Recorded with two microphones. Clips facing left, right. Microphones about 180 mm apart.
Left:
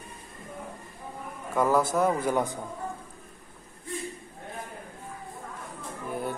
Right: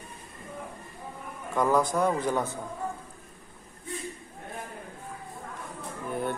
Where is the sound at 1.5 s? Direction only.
5° left (ahead or behind).